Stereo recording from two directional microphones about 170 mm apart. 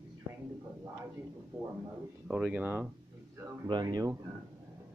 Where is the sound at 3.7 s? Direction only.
25° right (ahead or behind).